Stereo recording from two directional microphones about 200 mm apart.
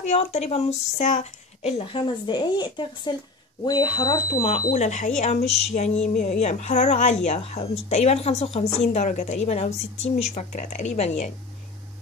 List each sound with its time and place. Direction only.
0.0 s speech: 35° left (ahead or behind)